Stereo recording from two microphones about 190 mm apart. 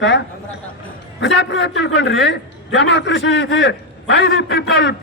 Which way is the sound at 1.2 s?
65° left (ahead or behind).